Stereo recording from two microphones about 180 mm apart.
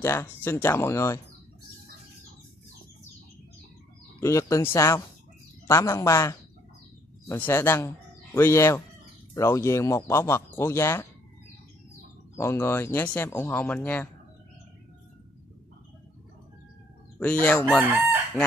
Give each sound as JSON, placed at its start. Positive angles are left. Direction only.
{"t": 0.0, "sound": "speech", "side_deg": 15}
{"t": 4.2, "sound": "speech", "side_deg": 15}
{"t": 12.4, "sound": "speech", "side_deg": 15}
{"t": 17.2, "sound": "speech", "side_deg": 10}
{"t": 17.8, "sound": "chicken", "side_deg": -15}